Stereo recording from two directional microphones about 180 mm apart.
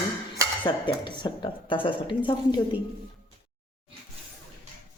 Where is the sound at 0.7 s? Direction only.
25° left (ahead or behind).